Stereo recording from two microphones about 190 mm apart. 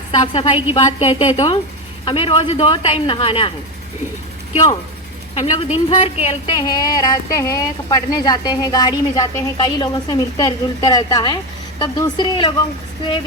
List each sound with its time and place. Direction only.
0.1 s a woman's voice: 30° left (ahead or behind)
4.5 s a woman's voice: 30° left (ahead or behind)